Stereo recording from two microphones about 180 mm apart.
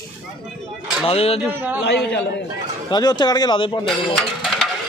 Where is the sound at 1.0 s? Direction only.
35° left (ahead or behind).